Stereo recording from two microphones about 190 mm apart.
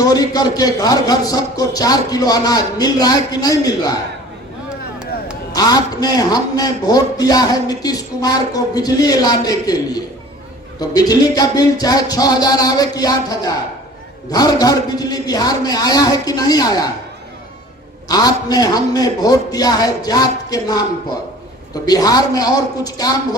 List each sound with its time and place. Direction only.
0.0 s speech: 20° left (ahead or behind)
5.5 s speech: 20° left (ahead or behind)
18.1 s speech: 20° left (ahead or behind)
21.8 s speech: 20° left (ahead or behind)